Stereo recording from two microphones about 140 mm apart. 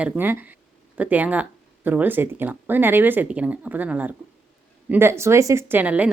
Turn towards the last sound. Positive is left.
turn(degrees=-10)  # may be behind; listen again after turning